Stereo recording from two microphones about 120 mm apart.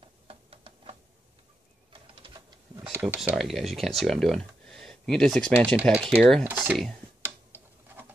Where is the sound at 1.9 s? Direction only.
45° right (ahead or behind).